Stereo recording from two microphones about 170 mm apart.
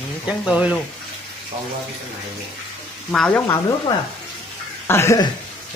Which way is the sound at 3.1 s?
5° left (ahead or behind).